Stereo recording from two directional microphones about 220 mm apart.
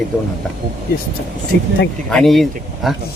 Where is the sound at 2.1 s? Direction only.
Centre (ahead or behind).